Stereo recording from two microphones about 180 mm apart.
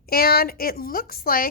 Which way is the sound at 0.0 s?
55° left (ahead or behind).